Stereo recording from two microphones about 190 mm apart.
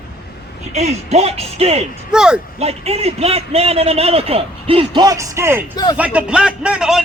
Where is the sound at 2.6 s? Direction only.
30° right (ahead or behind).